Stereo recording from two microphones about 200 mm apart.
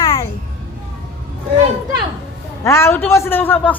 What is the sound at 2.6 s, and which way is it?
Speech, 15° left (ahead or behind).